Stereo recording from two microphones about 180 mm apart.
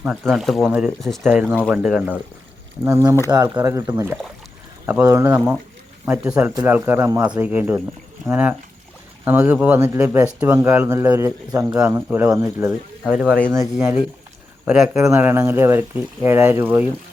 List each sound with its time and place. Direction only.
0.0 s speech: 5° right (ahead or behind)
2.8 s speech: 15° right (ahead or behind); by 13.5 s 5° left (ahead or behind)
14.6 s speech: 5° right (ahead or behind)
14.9 s speech: 15° right (ahead or behind)